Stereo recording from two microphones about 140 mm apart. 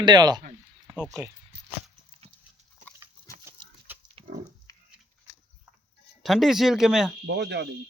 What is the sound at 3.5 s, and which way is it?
Livestock, 20° right (ahead or behind).